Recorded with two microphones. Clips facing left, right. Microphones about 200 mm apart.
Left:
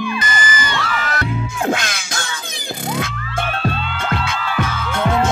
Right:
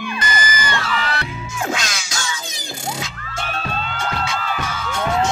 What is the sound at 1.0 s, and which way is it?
Music, 45° left (ahead or behind).